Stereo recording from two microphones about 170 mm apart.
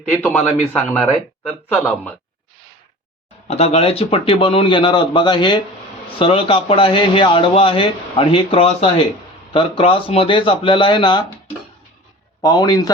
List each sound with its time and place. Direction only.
0.1 s a man's voice: 10° left (ahead or behind)
3.5 s a man's voice: 40° left (ahead or behind)
12.4 s speech: 20° left (ahead or behind)